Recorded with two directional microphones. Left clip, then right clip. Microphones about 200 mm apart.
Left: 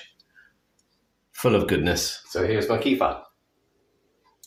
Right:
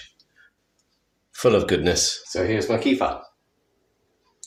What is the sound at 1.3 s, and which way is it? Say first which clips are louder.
Speech: right 3 dB; 15° right (ahead or behind).